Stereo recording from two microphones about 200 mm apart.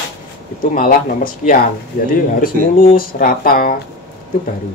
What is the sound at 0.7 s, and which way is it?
Speech, 45° left (ahead or behind).